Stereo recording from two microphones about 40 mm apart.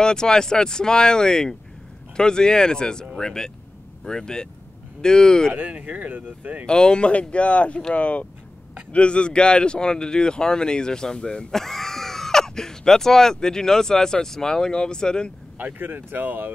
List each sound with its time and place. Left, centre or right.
0.0 s speech: centre
5.7 s speech: right
6.6 s speech: left
11.5 s speech: centre
15.5 s speech: right